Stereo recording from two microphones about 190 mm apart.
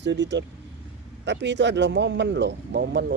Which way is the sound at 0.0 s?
70° right (ahead or behind).